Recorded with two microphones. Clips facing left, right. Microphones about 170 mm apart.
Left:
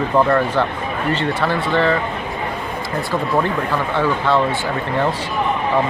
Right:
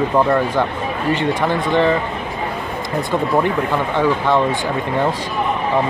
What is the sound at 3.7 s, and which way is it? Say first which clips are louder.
Speech: right 1 dB; 15° right (ahead or behind).